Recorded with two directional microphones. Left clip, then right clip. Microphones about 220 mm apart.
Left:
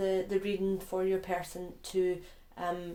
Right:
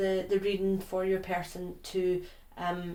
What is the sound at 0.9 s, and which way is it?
Speech, 40° left (ahead or behind).